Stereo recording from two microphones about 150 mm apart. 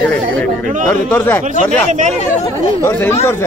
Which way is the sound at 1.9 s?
55° right (ahead or behind).